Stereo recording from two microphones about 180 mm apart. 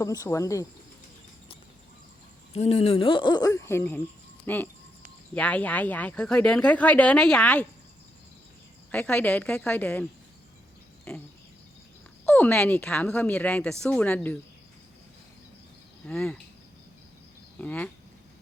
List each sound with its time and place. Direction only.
0.0 s speech: 20° left (ahead or behind)
2.5 s speech: 35° left (ahead or behind); by 7.7 s 5° left (ahead or behind)
8.9 s speech: 5° left (ahead or behind)
16.0 s cricket: 5° left (ahead or behind)
17.6 s speech: 10° left (ahead or behind)